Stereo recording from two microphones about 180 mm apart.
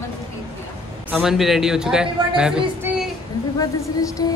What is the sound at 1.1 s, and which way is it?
A woman's voice, 5° right (ahead or behind).